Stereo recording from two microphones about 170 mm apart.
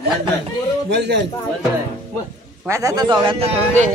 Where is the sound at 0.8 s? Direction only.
85° right.